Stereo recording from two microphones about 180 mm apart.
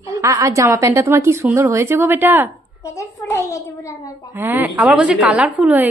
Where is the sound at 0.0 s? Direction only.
15° right (ahead or behind).